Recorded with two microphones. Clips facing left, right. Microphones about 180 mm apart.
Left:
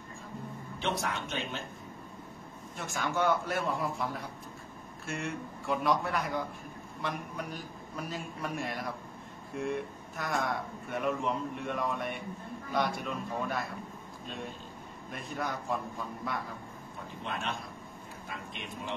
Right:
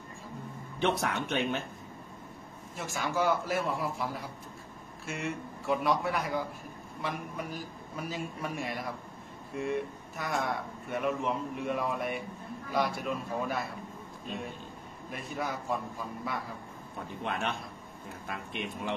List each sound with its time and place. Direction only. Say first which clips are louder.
0.7 s speech: right 4 dB; 60° right (ahead or behind)
2.8 s speech: even; centre (ahead or behind)
15.0 s speech: right 1 dB; centre (ahead or behind)
17.2 s speech: right 3 dB; 60° right (ahead or behind)